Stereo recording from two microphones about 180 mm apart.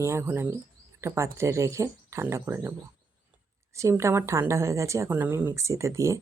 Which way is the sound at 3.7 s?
15° right (ahead or behind).